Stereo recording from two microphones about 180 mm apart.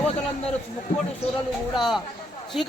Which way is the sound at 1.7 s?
Centre (ahead or behind).